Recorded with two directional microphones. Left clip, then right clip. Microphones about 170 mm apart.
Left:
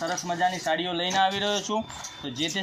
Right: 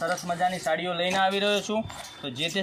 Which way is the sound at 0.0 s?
45° right (ahead or behind).